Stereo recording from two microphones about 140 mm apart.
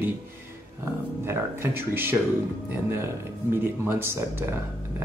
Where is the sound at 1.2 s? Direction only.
15° right (ahead or behind).